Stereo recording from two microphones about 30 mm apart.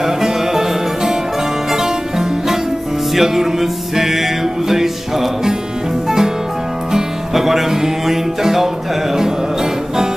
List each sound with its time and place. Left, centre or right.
0.0 s music: centre
6.0 s music: centre
7.3 s music: centre